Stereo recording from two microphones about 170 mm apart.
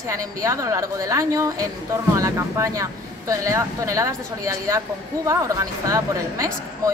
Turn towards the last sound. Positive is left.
turn(degrees=-20)  # may be behind; listen again after turning